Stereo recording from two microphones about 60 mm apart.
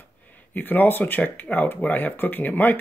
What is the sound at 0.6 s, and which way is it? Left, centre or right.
Speech, left.